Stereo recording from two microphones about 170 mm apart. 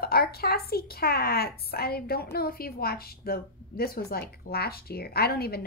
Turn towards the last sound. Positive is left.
turn(degrees=65)  # may be behind; listen again after turning